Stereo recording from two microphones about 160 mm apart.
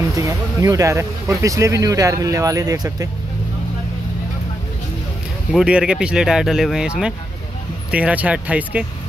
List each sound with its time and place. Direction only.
0.1 s speech: 20° right (ahead or behind)
5.5 s speech: 5° right (ahead or behind)